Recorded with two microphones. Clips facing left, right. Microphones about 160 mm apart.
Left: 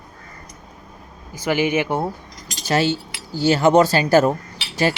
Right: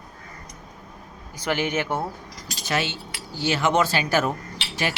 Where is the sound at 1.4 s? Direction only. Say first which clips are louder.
Left 5 dB; 10° left (ahead or behind).